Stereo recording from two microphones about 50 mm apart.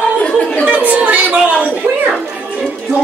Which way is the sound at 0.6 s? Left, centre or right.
Right.